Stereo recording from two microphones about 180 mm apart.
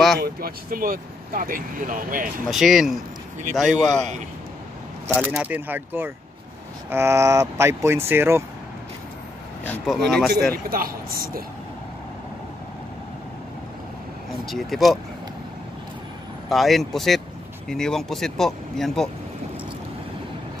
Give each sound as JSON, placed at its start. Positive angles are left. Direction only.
{"t": 0.2, "sound": "speech", "side_deg": -55}
{"t": 2.5, "sound": "speech", "side_deg": 0}
{"t": 5.2, "sound": "speech", "side_deg": -10}
{"t": 9.7, "sound": "speech", "side_deg": 0}
{"t": 10.5, "sound": "speech", "side_deg": -55}
{"t": 14.4, "sound": "speech", "side_deg": 0}
{"t": 16.4, "sound": "speech", "side_deg": 0}